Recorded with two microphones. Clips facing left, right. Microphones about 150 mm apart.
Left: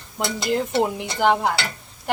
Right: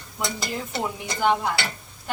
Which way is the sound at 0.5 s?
75° left (ahead or behind).